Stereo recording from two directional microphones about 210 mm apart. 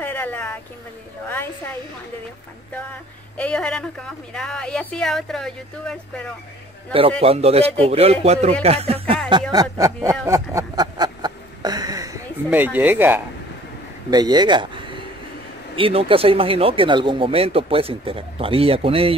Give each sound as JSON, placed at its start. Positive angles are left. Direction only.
{"t": 0.0, "sound": "speech", "side_deg": 10}
{"t": 3.3, "sound": "speech", "side_deg": 5}
{"t": 6.9, "sound": "speech", "side_deg": -25}
{"t": 10.2, "sound": "a sound", "side_deg": -15}
{"t": 12.4, "sound": "speech", "side_deg": -10}